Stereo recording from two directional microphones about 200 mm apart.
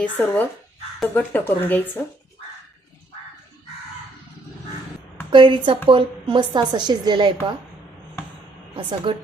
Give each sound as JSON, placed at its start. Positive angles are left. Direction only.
{"t": 0.0, "sound": "speech", "side_deg": 10}
{"t": 5.3, "sound": "a woman's voice", "side_deg": -25}
{"t": 8.7, "sound": "a woman's voice", "side_deg": -25}